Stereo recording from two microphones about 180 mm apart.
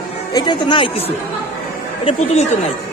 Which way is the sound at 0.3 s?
25° left (ahead or behind).